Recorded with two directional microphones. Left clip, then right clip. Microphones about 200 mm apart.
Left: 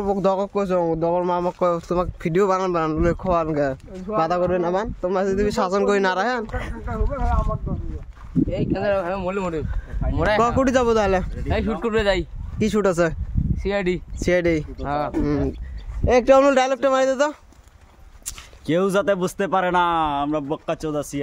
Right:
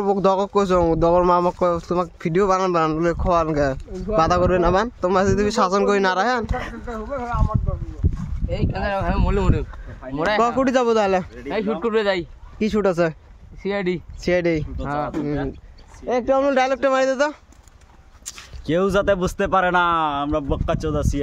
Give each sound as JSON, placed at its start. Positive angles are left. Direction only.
{"t": 0.0, "sound": "speech", "side_deg": -10}
{"t": 1.6, "sound": "speech", "side_deg": 0}
{"t": 8.5, "sound": "speech", "side_deg": -60}
{"t": 10.1, "sound": "speech", "side_deg": 0}
{"t": 15.2, "sound": "speech", "side_deg": 15}
{"t": 16.1, "sound": "speech", "side_deg": 25}
{"t": 16.5, "sound": "speech", "side_deg": -10}